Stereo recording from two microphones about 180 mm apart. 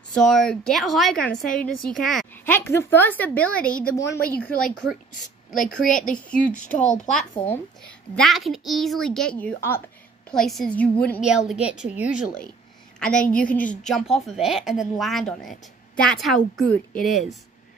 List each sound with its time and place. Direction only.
0.1 s a woman's voice: centre (ahead or behind)
5.9 s speech: 45° left (ahead or behind)
7.4 s a woman's voice: 5° left (ahead or behind)
11.2 s a woman's voice: 5° right (ahead or behind)
13.3 s a woman's voice: 5° left (ahead or behind)